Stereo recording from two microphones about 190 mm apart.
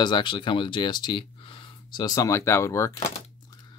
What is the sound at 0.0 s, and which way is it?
Speech, 25° left (ahead or behind).